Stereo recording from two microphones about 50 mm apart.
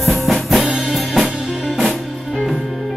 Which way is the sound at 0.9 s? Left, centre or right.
Centre.